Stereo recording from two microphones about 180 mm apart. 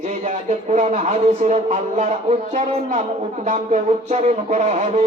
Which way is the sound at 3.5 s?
40° right (ahead or behind).